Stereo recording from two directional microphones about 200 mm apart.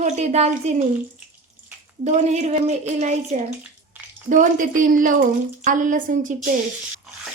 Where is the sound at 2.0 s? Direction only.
35° right (ahead or behind).